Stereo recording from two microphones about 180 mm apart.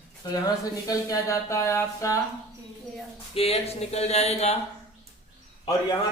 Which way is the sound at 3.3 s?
35° left (ahead or behind).